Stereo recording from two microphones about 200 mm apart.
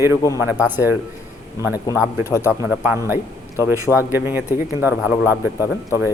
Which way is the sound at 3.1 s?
10° right (ahead or behind).